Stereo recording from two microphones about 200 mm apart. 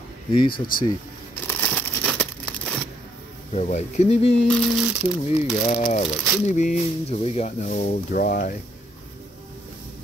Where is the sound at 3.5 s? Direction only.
35° left (ahead or behind).